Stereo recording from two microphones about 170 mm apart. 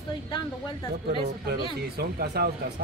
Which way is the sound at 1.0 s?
65° right (ahead or behind).